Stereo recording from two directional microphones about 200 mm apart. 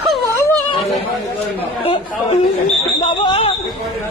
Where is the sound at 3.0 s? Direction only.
25° left (ahead or behind).